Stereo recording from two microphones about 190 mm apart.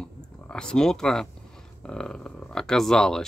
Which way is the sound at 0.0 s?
5° left (ahead or behind).